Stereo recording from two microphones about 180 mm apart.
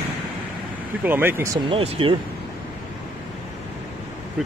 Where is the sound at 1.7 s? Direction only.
30° right (ahead or behind).